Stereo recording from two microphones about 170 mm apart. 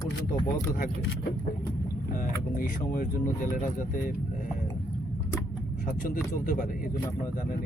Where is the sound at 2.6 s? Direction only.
55° left (ahead or behind).